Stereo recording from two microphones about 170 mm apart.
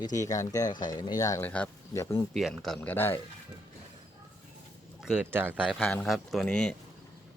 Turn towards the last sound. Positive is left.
turn(degrees=5)  # may be behind; listen again after turning